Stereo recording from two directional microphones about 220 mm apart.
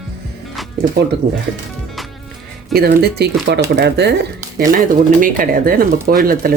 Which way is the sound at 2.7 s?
45° right (ahead or behind).